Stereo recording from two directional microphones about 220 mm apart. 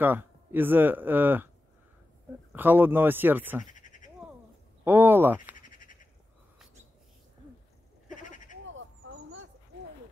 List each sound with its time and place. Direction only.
0.0 s speech: 10° right (ahead or behind)
2.5 s speech: 10° right (ahead or behind)
3.6 s frog: 35° left (ahead or behind)
4.8 s speech: 10° right (ahead or behind)
5.6 s a sound: 35° left (ahead or behind)
8.1 s sheep: 35° left (ahead or behind)